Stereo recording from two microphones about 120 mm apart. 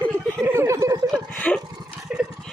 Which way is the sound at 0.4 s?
20° right (ahead or behind).